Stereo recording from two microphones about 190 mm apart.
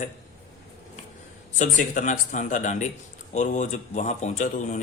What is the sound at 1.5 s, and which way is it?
Speech, 40° left (ahead or behind).